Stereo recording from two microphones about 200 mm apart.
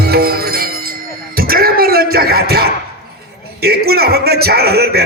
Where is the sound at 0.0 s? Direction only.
50° right (ahead or behind).